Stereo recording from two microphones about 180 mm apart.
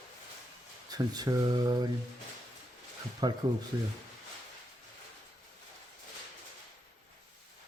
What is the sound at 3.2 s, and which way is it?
Speech, 25° right (ahead or behind).